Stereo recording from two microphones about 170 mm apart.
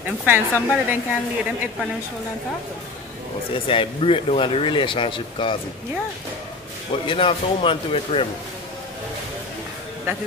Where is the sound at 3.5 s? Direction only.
30° left (ahead or behind).